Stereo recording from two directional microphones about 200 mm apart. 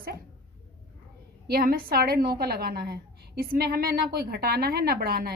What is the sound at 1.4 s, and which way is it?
A woman's voice, 50° right (ahead or behind).